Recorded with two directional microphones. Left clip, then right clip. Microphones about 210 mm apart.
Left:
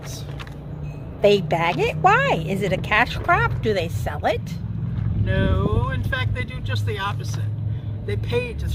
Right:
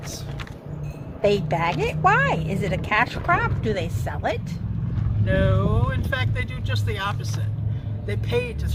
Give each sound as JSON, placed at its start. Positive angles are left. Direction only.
{"t": 1.5, "sound": "speech", "side_deg": 50}
{"t": 5.2, "sound": "speech", "side_deg": 0}